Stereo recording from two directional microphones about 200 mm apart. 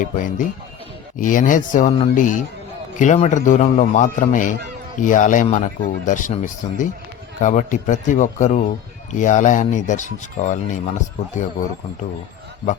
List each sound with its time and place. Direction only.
0.0 s speech: 40° left (ahead or behind)